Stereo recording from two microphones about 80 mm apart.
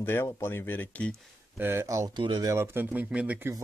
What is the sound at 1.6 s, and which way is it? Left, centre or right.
Speech, right.